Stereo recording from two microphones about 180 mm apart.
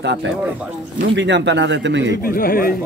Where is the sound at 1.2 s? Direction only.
80° right.